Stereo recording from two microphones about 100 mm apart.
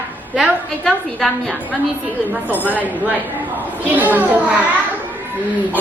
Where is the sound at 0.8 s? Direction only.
Centre (ahead or behind).